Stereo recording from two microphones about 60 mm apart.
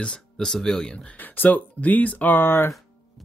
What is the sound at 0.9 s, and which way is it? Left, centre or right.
Speech, centre.